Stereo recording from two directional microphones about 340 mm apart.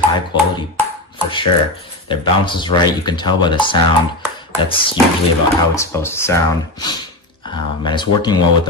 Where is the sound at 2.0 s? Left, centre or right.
Centre.